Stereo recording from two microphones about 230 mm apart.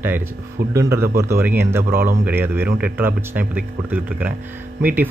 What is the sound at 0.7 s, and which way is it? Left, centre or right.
Speech, centre.